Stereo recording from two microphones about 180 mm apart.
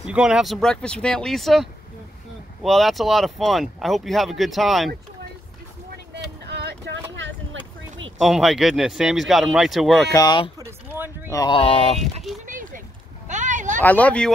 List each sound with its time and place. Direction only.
0.0 s speech: 5° right (ahead or behind)
6.1 s vehicle: 75° right (ahead or behind)
8.2 s speech: centre (ahead or behind)
10.1 s speech: 20° left (ahead or behind)
11.5 s speech: 35° left (ahead or behind)
12.0 s a sound: centre (ahead or behind)
12.4 s a sound: 50° right (ahead or behind)
13.7 s speech: 10° left (ahead or behind)